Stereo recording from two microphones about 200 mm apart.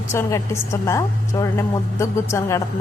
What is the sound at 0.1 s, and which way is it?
A woman's voice, 15° left (ahead or behind).